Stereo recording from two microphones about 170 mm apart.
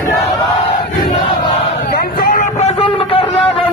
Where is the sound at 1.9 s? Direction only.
60° left (ahead or behind); by 3.2 s 30° left (ahead or behind).